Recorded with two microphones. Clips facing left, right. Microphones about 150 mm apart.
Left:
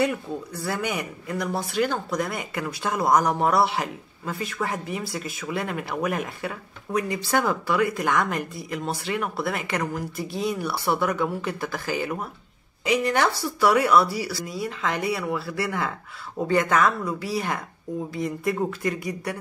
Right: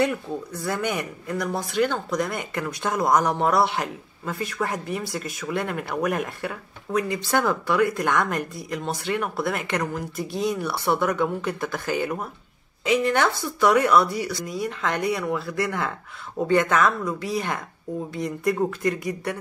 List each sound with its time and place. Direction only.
0.7 s speech: 5° left (ahead or behind)